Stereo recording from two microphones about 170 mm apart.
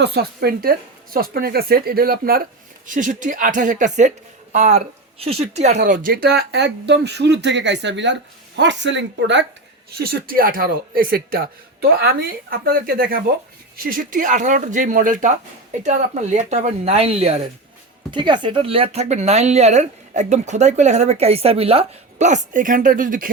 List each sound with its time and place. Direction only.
0.0 s a woman's voice: 75° right (ahead or behind); by 9.4 s 90° right
10.0 s a woman's voice: 65° right (ahead or behind); by 17.5 s 40° right (ahead or behind)
18.1 s speech: 25° right (ahead or behind); by 23.3 s 55° right (ahead or behind)